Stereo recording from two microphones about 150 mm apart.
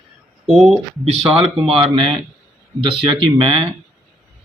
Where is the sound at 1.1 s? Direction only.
40° right (ahead or behind).